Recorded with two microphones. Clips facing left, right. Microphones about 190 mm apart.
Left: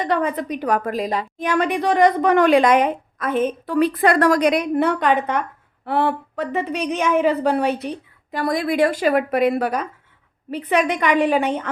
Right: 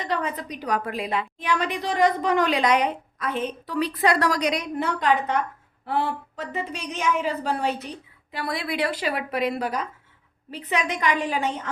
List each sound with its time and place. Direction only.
0.0 s a woman's voice: 55° left (ahead or behind)